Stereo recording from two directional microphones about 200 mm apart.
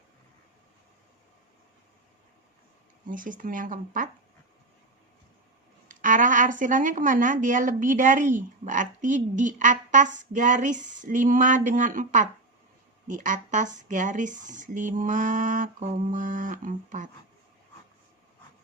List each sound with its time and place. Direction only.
3.1 s speech: 40° right (ahead or behind)
5.9 s a woman's voice: 40° right (ahead or behind)